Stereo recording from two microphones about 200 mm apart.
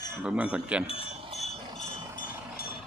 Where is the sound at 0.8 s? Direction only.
30° left (ahead or behind).